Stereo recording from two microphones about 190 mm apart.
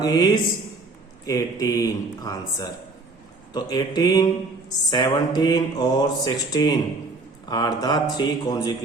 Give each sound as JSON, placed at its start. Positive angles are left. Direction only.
{"t": 0.0, "sound": "speech", "side_deg": 20}